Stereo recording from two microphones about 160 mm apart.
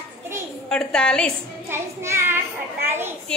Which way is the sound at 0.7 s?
5° left (ahead or behind).